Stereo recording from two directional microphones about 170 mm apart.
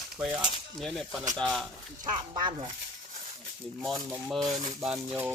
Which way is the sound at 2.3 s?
30° right (ahead or behind).